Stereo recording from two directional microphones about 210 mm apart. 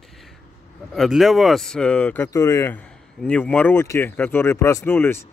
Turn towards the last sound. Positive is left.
turn(degrees=10)  # may be behind; listen again after turning